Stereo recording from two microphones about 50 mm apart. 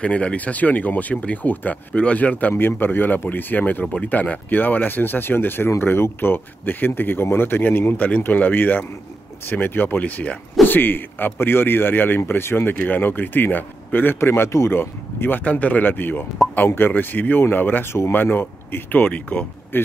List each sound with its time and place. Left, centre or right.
0.0 s speech: left
2.5 s speech: left
12.7 s speech: left